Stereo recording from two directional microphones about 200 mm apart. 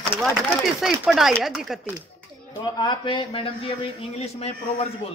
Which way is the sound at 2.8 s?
25° left (ahead or behind).